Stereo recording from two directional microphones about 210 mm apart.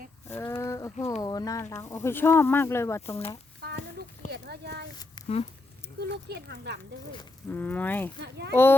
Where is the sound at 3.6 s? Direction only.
50° right (ahead or behind).